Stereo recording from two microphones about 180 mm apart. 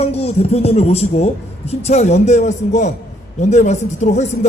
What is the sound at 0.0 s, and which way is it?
A man's voice, 35° left (ahead or behind).